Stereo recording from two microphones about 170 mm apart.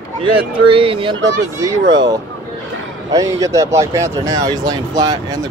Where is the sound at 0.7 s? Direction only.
30° right (ahead or behind).